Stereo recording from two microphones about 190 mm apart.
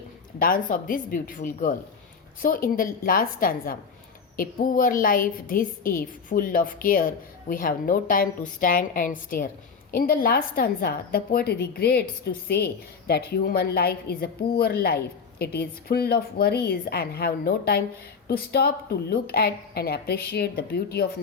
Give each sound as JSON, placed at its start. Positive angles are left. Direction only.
{"t": 0.3, "sound": "a woman's voice", "side_deg": 50}